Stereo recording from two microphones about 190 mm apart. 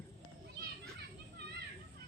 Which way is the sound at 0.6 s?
60° right (ahead or behind).